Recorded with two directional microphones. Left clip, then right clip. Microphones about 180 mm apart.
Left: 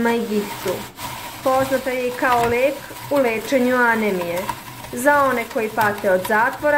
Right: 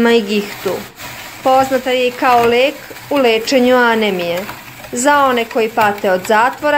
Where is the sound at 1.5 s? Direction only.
60° right (ahead or behind).